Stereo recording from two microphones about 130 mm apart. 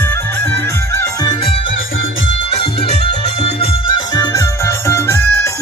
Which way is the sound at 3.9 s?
30° left (ahead or behind).